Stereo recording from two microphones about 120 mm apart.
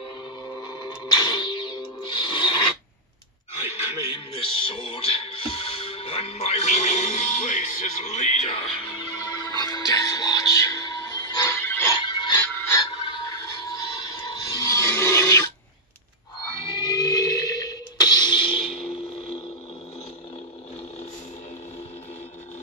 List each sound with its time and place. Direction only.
0.5 s music: 35° left (ahead or behind)
3.7 s music: 60° left (ahead or behind); by 11.5 s 35° left (ahead or behind)
11.6 s music: 15° left (ahead or behind)
11.9 s music: 40° left (ahead or behind)
13.6 s a sound: 35° left (ahead or behind)
16.6 s a sound: 35° left (ahead or behind); by 19.4 s 55° left (ahead or behind)